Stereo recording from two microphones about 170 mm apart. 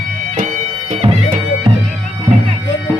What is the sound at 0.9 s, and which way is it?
Music, 35° right (ahead or behind).